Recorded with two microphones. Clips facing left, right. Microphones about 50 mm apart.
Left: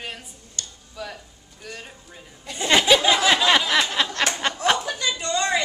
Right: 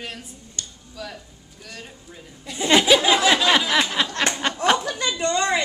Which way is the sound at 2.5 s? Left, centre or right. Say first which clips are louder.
Right 1 dB; centre.